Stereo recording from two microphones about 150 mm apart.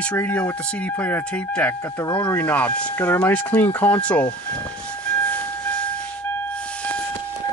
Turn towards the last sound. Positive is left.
turn(degrees=10)  # may be behind; listen again after turning